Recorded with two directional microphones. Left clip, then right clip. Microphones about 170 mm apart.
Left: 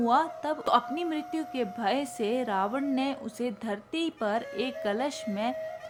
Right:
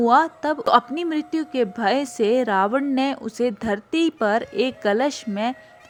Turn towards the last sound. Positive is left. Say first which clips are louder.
# right 7 dB
turn(degrees=-35)  # may be behind; listen again after turning